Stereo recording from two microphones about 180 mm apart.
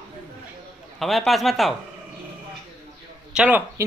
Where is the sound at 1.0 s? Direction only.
Centre (ahead or behind).